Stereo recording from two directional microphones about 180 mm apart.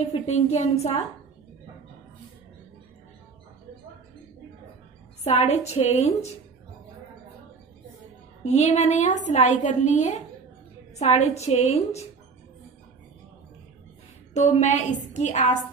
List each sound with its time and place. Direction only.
0.0 s a woman's voice: 35° left (ahead or behind)
5.2 s a woman's voice: 35° left (ahead or behind)
8.5 s a woman's voice: 40° left (ahead or behind)
14.3 s a woman's voice: 40° left (ahead or behind)